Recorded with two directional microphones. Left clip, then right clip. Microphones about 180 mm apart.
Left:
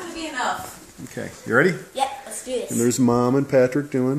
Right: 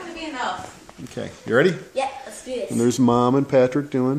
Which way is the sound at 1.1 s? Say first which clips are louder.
Even; 10° right (ahead or behind).